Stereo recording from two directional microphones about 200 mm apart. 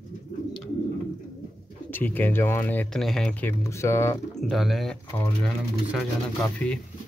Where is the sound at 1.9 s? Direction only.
10° left (ahead or behind).